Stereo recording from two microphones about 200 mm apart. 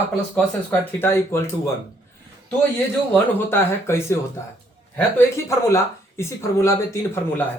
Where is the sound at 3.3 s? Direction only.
10° left (ahead or behind).